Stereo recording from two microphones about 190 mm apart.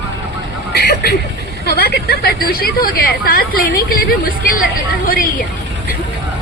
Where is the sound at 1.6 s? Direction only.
55° left (ahead or behind).